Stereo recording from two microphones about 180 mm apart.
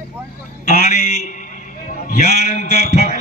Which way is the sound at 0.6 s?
55° left (ahead or behind).